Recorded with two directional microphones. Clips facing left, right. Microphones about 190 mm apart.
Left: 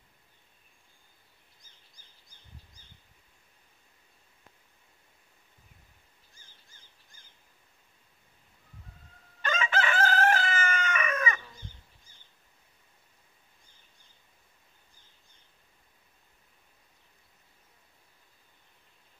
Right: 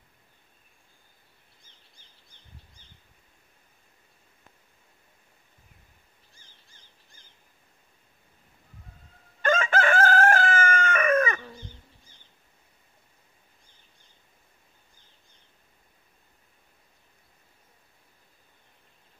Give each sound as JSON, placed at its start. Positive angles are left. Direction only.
{"t": 9.4, "sound": "chicken", "side_deg": -50}